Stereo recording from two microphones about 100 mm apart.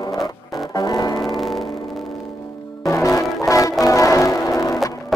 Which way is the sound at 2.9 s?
30° left (ahead or behind).